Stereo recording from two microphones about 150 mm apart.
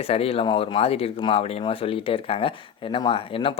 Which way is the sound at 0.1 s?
40° left (ahead or behind).